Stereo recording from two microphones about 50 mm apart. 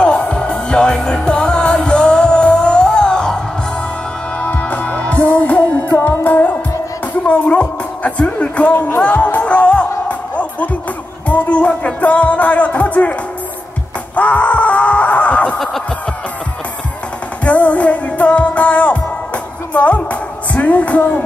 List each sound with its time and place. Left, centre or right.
0.0 s music: centre
4.4 s music: left
14.1 s screaming: left
17.5 s music: left